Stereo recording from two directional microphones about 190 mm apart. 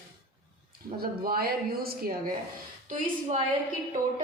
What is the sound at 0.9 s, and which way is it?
A woman's voice, 50° right (ahead or behind).